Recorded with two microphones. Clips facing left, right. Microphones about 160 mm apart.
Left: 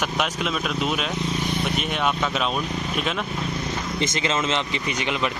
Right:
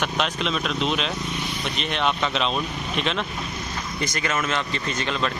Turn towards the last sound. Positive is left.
turn(degrees=15)  # may be behind; listen again after turning